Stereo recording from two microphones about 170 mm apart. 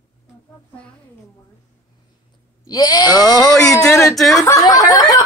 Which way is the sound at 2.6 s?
20° left (ahead or behind).